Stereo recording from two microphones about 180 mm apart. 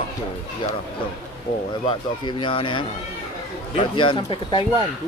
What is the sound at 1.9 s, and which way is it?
Speech, 30° left (ahead or behind).